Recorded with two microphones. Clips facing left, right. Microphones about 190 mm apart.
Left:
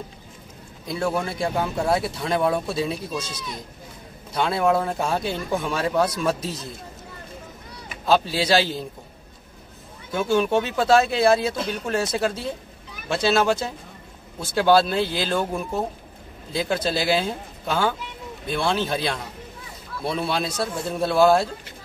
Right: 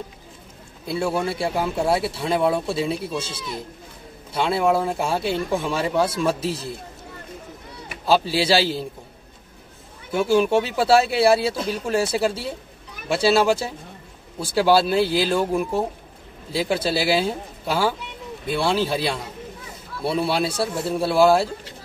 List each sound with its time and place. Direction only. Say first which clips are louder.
0.8 s speech: right 2 dB; 5° right (ahead or behind)
3.2 s speech: right 2 dB; 30° right (ahead or behind)
4.3 s speech: right 1 dB; 5° right (ahead or behind)
8.0 s a man's voice: right 1 dB; 5° right (ahead or behind)
10.1 s speech: right 2 dB; 5° right (ahead or behind)